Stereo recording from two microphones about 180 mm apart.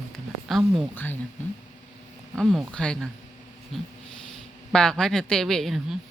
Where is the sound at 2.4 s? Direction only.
5° left (ahead or behind).